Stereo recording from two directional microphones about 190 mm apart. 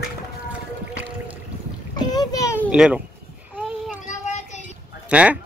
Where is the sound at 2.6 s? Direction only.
5° right (ahead or behind).